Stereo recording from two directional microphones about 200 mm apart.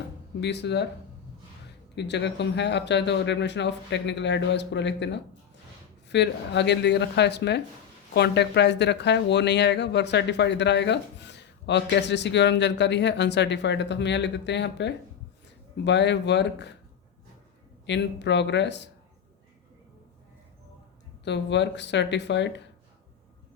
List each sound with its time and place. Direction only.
0.3 s speech: 60° left (ahead or behind)
2.0 s speech: 60° left (ahead or behind)
17.8 s speech: 60° left (ahead or behind)
21.2 s speech: 60° left (ahead or behind)